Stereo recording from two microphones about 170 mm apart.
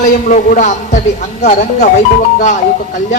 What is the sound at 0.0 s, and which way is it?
A man's voice, 50° left (ahead or behind).